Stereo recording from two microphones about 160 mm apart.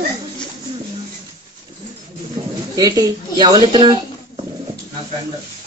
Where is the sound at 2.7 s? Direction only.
25° right (ahead or behind).